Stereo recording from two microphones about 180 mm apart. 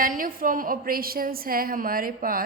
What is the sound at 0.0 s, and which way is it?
A woman's voice, 50° right (ahead or behind).